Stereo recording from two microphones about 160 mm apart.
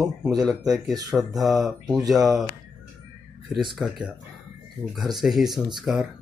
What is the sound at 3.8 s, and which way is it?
Speech, 5° right (ahead or behind).